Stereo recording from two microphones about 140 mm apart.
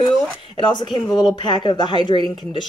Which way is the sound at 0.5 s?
35° left (ahead or behind).